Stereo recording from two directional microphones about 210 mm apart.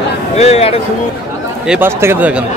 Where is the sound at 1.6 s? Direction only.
5° right (ahead or behind).